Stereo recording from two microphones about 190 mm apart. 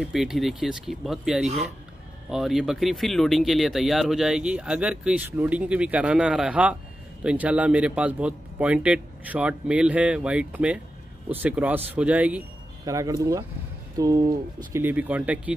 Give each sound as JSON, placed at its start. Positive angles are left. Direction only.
{"t": 0.0, "sound": "speech", "side_deg": 0}
{"t": 12.8, "sound": "speech", "side_deg": -15}